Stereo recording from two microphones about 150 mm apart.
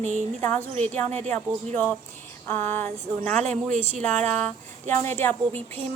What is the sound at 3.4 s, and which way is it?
Speech, 50° right (ahead or behind).